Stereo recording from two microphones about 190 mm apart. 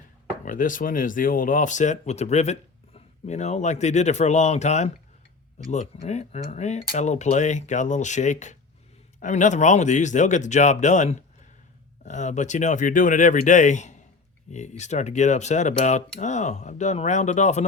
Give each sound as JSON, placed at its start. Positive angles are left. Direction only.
{"t": 0.4, "sound": "speech", "side_deg": 45}